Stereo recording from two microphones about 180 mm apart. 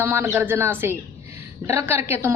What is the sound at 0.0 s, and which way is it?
A woman's voice, 10° right (ahead or behind).